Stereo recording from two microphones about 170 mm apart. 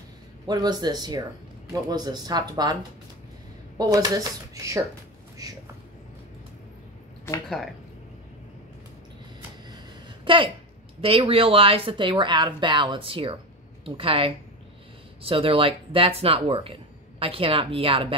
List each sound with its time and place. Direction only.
0.5 s speech: 25° right (ahead or behind)
7.4 s speech: centre (ahead or behind)
9.7 s a sound: 30° right (ahead or behind)
11.0 s a woman's voice: 35° right (ahead or behind)